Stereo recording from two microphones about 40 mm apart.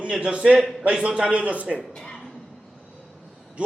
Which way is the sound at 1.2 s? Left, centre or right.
Right.